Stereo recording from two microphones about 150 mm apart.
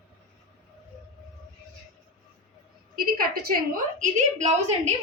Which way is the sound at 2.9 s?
75° right (ahead or behind).